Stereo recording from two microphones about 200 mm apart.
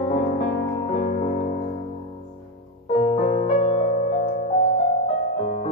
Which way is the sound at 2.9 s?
35° left (ahead or behind).